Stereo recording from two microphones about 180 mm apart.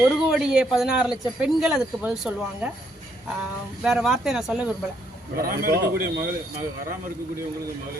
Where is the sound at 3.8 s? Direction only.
Centre (ahead or behind).